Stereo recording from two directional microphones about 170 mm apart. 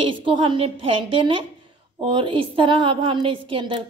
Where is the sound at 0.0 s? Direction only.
30° right (ahead or behind).